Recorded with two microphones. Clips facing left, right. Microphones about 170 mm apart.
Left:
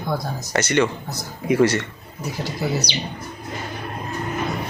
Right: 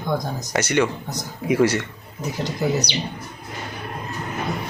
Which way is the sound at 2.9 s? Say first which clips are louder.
Right 1 dB; 60° right (ahead or behind).